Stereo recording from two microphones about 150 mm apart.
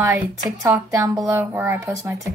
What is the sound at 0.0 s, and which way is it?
A child's voice, 20° right (ahead or behind).